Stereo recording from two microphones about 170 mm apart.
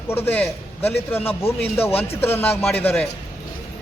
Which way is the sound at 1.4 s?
35° left (ahead or behind).